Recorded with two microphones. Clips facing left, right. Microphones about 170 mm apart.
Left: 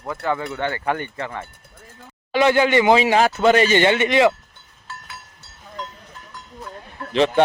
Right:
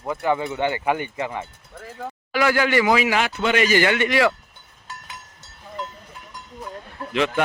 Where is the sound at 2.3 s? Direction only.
25° left (ahead or behind).